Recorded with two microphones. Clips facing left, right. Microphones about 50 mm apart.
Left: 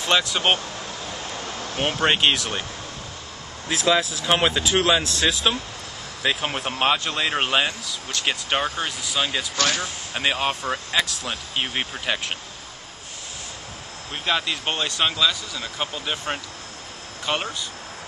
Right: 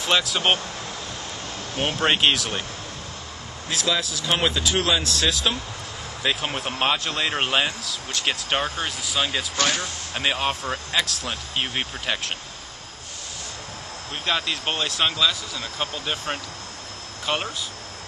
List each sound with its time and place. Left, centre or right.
0.0 s speech: centre
1.8 s speech: centre
3.6 s speech: centre
14.2 s speech: centre